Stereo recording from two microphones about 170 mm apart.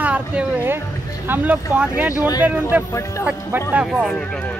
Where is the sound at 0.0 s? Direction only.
5° right (ahead or behind).